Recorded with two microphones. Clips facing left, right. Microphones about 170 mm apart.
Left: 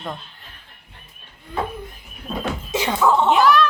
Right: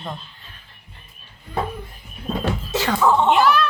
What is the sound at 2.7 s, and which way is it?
Music, 15° left (ahead or behind).